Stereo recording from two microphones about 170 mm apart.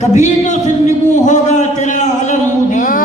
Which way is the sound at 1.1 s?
45° left (ahead or behind).